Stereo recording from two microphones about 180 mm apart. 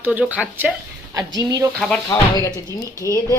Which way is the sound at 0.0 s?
10° right (ahead or behind).